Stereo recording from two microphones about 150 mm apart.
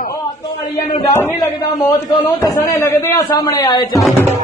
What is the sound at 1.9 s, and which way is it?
A man's voice, 25° left (ahead or behind).